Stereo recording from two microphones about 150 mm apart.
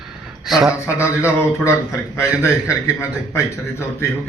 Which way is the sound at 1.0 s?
20° left (ahead or behind).